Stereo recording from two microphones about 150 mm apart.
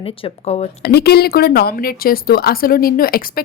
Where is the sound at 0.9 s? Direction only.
90° left.